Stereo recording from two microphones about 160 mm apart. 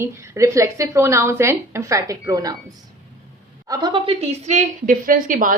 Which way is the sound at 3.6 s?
25° right (ahead or behind).